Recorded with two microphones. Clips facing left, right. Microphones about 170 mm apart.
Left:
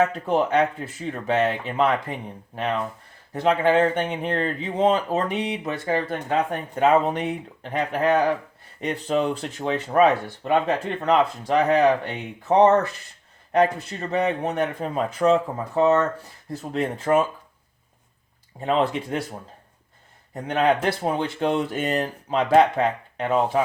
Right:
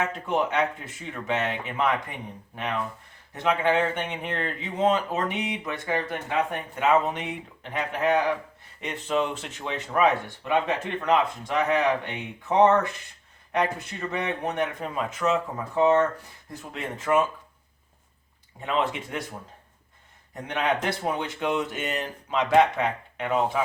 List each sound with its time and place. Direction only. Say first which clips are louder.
0.0 s speech: left 5 dB; 35° left (ahead or behind)
3.3 s speech: left 4 dB; 35° left (ahead or behind)
18.6 s speech: left 5 dB; 35° left (ahead or behind)
20.3 s speech: left 6 dB; 35° left (ahead or behind)